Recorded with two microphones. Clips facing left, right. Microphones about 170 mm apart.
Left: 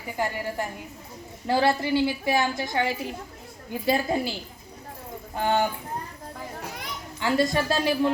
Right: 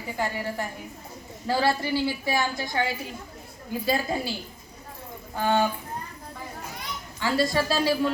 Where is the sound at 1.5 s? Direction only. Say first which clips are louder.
Left 2 dB; 20° left (ahead or behind).